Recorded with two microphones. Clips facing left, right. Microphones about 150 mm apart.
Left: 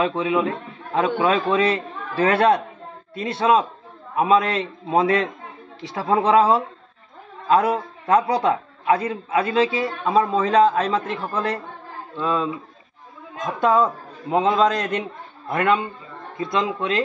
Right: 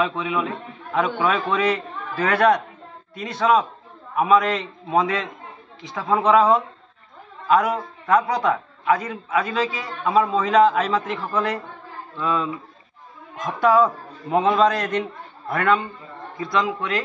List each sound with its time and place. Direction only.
0.0 s a man's voice: 30° left (ahead or behind)